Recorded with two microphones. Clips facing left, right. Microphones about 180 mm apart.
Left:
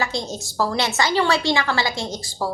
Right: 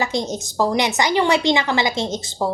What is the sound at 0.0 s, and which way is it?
A woman's voice, 20° right (ahead or behind).